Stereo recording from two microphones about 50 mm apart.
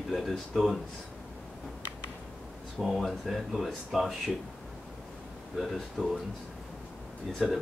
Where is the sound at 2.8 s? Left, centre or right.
Centre.